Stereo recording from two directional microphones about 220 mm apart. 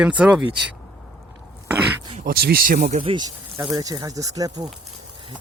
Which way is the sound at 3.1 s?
20° right (ahead or behind).